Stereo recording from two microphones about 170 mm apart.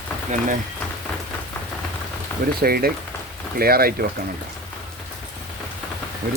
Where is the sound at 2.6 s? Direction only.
60° right (ahead or behind).